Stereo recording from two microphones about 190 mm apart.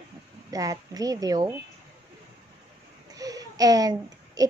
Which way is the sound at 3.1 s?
20° right (ahead or behind).